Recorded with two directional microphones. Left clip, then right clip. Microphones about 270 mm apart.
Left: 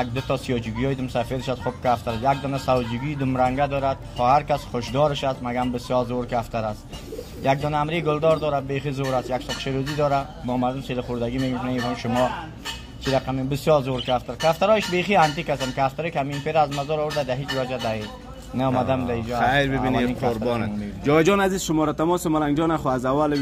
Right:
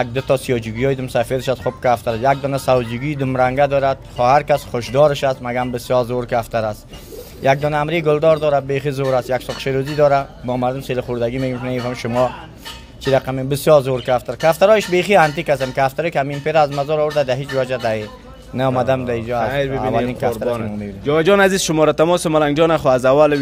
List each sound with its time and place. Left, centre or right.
0.0 s speech: right
20.4 s a man's voice: centre
21.2 s a man's voice: right